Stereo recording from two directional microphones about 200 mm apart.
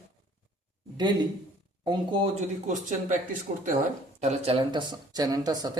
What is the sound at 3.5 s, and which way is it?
Speech, 35° right (ahead or behind).